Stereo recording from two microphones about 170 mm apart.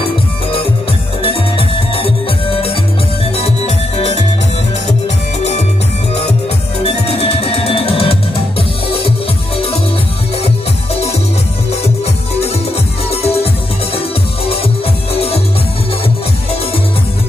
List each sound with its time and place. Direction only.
1.2 s music: 35° left (ahead or behind)
6.8 s music: 35° left (ahead or behind)
13.1 s music: 35° left (ahead or behind)